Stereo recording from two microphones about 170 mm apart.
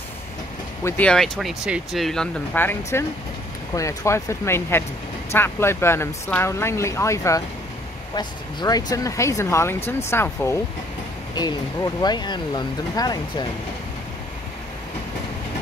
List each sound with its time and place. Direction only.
0.8 s speech: 10° left (ahead or behind)
11.3 s speech: 25° left (ahead or behind)